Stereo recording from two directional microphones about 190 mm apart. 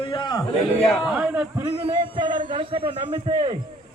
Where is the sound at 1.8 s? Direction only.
25° right (ahead or behind).